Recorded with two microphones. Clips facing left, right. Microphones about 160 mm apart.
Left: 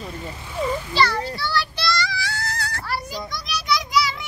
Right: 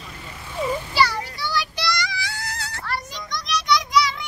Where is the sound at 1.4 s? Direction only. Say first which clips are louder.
Left 1 dB; 15° right (ahead or behind).